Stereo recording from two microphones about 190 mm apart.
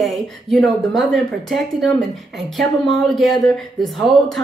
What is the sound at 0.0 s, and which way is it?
Speech, centre (ahead or behind).